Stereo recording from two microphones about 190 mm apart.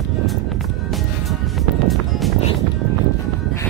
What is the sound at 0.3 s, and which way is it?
Music, centre (ahead or behind).